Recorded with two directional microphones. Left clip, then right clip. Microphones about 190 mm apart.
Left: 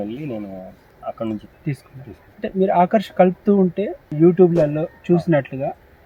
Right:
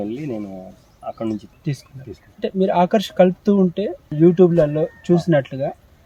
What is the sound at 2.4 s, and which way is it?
Speech, 20° right (ahead or behind).